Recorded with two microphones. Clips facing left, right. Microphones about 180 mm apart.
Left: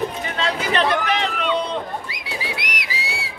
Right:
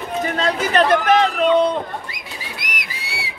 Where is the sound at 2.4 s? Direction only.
45° right (ahead or behind); by 3.3 s 65° right (ahead or behind).